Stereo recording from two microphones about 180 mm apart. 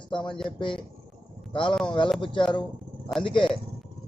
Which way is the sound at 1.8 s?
30° left (ahead or behind).